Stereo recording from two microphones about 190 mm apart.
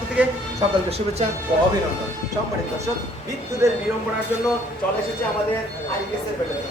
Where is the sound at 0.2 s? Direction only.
5° right (ahead or behind).